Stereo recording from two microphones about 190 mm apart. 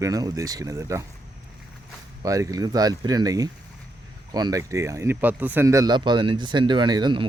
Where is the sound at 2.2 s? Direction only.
20° right (ahead or behind).